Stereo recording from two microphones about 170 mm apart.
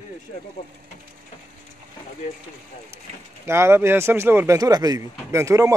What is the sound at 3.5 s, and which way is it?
A man's voice, 15° right (ahead or behind).